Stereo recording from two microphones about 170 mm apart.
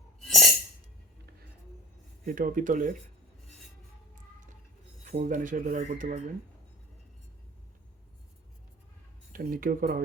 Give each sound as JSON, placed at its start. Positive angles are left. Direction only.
{"t": 0.2, "sound": "a sound", "side_deg": 0}
{"t": 2.2, "sound": "speech", "side_deg": -55}
{"t": 5.2, "sound": "speech", "side_deg": -50}
{"t": 9.3, "sound": "speech", "side_deg": -55}